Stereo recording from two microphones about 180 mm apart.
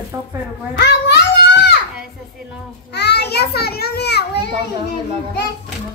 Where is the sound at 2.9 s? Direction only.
65° left (ahead or behind).